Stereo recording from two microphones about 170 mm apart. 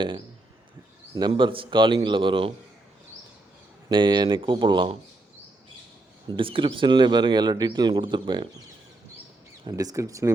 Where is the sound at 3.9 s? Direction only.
25° right (ahead or behind).